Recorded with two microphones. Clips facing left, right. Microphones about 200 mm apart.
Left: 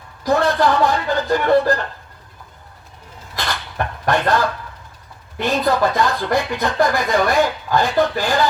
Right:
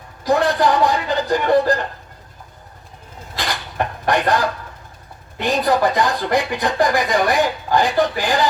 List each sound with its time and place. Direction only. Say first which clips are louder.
0.3 s speech: even; 15° right (ahead or behind)
3.3 s dishes: right 1 dB; 15° right (ahead or behind)
5.4 s speech: even; 15° right (ahead or behind)